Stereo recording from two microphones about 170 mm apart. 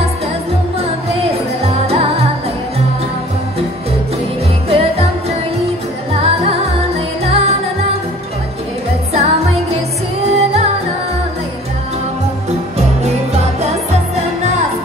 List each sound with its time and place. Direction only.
0.7 s music: 35° right (ahead or behind)
4.6 s music: 35° right (ahead or behind)
6.2 s music: 35° right (ahead or behind)
9.1 s music: 40° right (ahead or behind)